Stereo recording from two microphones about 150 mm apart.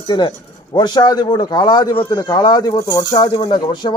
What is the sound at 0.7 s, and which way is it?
A man's voice, 30° left (ahead or behind).